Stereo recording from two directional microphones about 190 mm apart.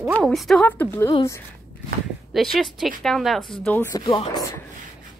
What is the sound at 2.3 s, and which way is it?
A woman's voice, centre (ahead or behind).